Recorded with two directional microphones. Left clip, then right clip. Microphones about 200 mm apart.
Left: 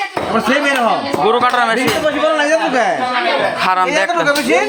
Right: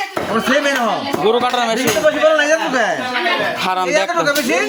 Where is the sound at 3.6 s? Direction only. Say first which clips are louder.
Left 3 dB; 20° right (ahead or behind).